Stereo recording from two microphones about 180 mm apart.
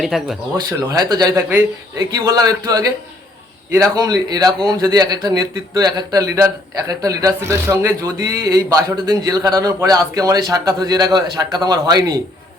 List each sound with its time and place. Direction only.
0.0 s speech: centre (ahead or behind)
0.5 s a man's voice: 20° right (ahead or behind)